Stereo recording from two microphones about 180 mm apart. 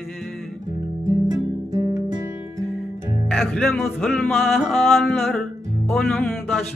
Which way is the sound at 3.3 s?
Centre (ahead or behind).